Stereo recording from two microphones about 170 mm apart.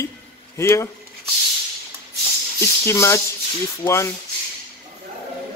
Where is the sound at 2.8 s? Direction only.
15° left (ahead or behind).